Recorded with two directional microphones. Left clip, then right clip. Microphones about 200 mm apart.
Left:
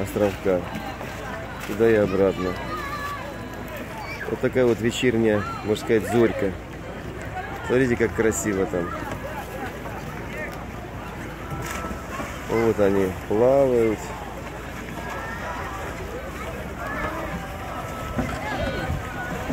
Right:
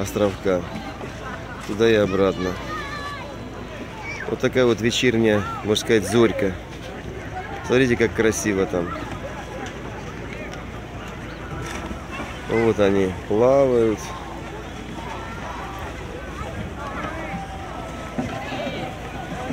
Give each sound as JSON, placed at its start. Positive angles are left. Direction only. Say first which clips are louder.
{"t": 0.0, "sound": "speech", "louder": "right 1 dB", "side_deg": -10}
{"t": 1.8, "sound": "speech", "louder": "right 1 dB", "side_deg": -15}
{"t": 4.4, "sound": "speech", "louder": "right 2 dB", "side_deg": -15}
{"t": 7.7, "sound": "speech", "louder": "right 3 dB", "side_deg": -20}
{"t": 12.5, "sound": "speech", "louder": "right 2 dB", "side_deg": -15}